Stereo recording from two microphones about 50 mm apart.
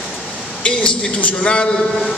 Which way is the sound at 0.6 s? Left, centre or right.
Left.